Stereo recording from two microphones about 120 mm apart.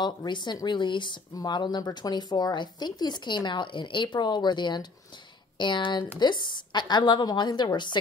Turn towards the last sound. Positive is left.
turn(degrees=40)  # may be behind; listen again after turning